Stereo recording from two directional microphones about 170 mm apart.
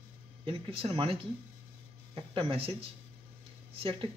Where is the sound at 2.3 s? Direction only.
35° right (ahead or behind).